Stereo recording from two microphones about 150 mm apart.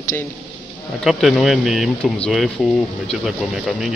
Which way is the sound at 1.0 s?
Centre (ahead or behind).